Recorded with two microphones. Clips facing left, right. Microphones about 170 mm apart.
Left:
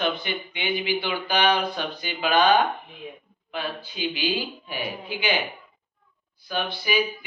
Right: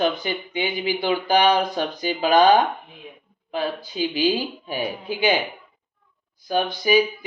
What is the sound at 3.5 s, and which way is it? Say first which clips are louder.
Speech: right 6 dB; 40° right (ahead or behind).